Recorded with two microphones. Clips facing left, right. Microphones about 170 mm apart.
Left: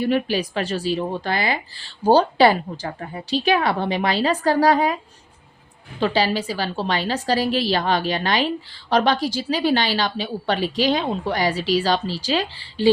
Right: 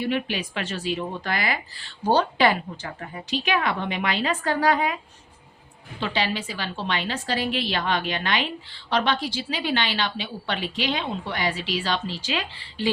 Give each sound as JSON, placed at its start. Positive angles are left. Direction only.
{"t": 0.0, "sound": "a woman's voice", "side_deg": 40}
{"t": 6.0, "sound": "a woman's voice", "side_deg": 40}